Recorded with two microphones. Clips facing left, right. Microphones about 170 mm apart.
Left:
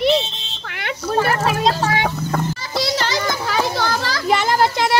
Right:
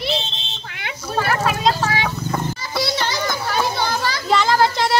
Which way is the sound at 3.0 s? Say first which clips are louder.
Left 1 dB; 90° left.